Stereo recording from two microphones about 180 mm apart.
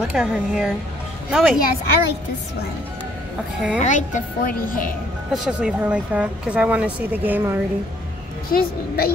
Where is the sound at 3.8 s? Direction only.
45° left (ahead or behind).